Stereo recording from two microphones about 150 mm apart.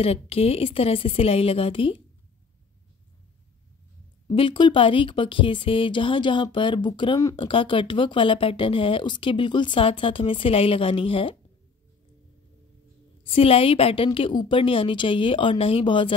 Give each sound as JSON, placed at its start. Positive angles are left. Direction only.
{"t": 0.0, "sound": "speech", "side_deg": 40}
{"t": 4.4, "sound": "speech", "side_deg": 30}
{"t": 13.2, "sound": "speech", "side_deg": 40}